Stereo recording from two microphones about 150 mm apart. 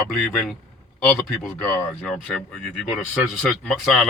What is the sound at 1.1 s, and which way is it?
Speech, 15° left (ahead or behind).